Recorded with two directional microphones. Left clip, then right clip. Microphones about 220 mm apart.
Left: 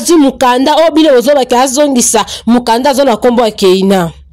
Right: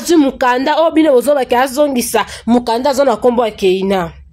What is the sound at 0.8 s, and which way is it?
Speech, 10° left (ahead or behind).